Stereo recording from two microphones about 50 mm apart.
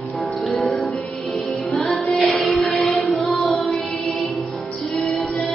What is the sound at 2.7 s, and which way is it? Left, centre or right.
Music, centre.